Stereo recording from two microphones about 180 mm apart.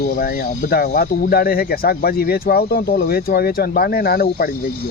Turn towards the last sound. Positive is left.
turn(degrees=60)  # may be behind; listen again after turning